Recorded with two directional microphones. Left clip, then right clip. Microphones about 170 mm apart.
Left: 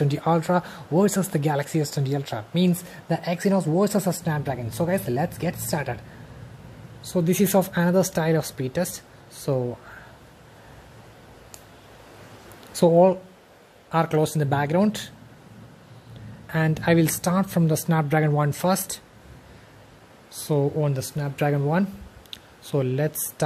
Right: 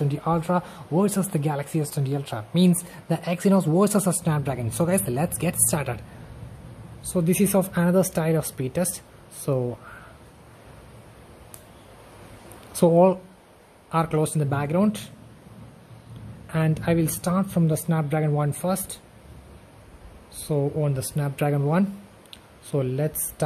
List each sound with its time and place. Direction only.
0.0 s speech: 10° left (ahead or behind)
7.1 s speech: 5° left (ahead or behind)
12.7 s speech: centre (ahead or behind)
16.4 s speech: 10° left (ahead or behind)
20.3 s speech: 15° left (ahead or behind)
21.0 s speech: centre (ahead or behind)